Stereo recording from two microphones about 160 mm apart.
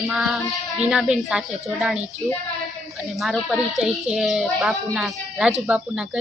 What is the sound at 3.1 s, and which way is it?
Speech, centre (ahead or behind).